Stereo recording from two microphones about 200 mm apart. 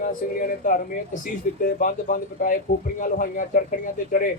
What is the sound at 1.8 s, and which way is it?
A man's voice, 40° left (ahead or behind).